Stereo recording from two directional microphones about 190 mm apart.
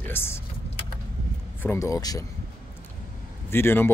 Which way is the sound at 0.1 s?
10° left (ahead or behind).